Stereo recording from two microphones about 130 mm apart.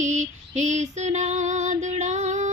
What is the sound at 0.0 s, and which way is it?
Female singing, 70° right (ahead or behind).